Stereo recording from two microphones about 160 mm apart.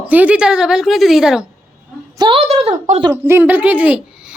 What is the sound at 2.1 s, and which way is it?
Speech, 30° right (ahead or behind).